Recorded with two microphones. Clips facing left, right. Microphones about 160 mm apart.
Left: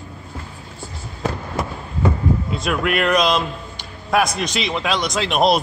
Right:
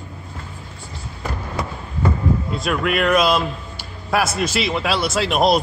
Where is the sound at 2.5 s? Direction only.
Centre (ahead or behind).